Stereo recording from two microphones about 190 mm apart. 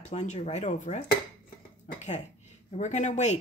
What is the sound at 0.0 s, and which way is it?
Speech, 40° left (ahead or behind).